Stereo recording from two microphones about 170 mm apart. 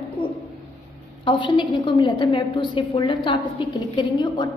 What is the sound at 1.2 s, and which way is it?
A woman's voice, 30° left (ahead or behind).